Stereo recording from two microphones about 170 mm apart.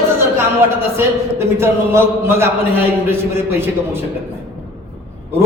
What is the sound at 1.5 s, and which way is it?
Speech, 15° right (ahead or behind).